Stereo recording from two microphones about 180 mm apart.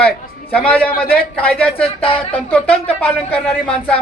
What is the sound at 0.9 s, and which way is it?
Speech, 55° left (ahead or behind).